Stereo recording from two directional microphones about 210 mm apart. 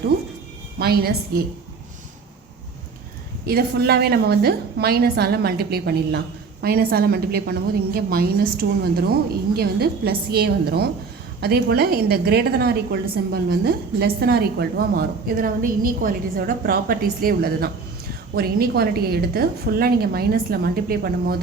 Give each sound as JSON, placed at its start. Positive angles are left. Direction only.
{"t": 0.8, "sound": "a woman's voice", "side_deg": -45}
{"t": 3.4, "sound": "a woman's voice", "side_deg": -50}